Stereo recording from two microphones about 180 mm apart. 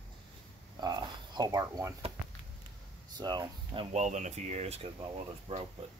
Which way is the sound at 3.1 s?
25° right (ahead or behind).